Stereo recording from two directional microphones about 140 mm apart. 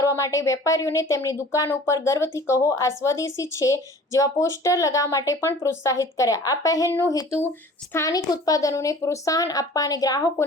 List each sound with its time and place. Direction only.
0.0 s speech: 20° left (ahead or behind)